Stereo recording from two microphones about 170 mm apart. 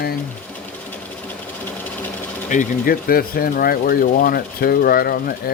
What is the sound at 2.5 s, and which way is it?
Speech, 55° left (ahead or behind).